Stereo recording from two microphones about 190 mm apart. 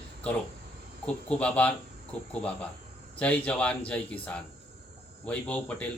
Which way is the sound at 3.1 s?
5° left (ahead or behind).